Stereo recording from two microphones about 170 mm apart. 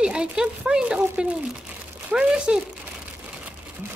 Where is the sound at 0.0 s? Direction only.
5° right (ahead or behind).